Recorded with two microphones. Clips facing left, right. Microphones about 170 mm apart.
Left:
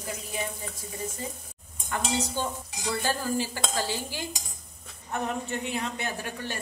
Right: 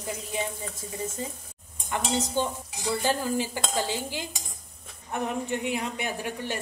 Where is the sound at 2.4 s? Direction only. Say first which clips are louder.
Right 3 dB; 20° right (ahead or behind).